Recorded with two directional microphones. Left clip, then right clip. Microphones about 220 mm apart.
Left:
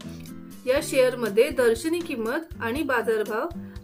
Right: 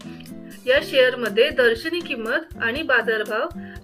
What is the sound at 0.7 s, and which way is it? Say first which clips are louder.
Speech: right 4 dB; 50° left (ahead or behind).